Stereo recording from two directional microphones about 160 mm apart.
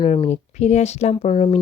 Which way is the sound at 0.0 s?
45° left (ahead or behind).